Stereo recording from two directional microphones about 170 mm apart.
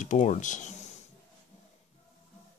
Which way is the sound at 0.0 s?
45° left (ahead or behind).